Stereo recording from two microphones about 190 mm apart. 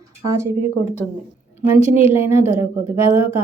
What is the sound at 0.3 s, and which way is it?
Speech, 15° right (ahead or behind).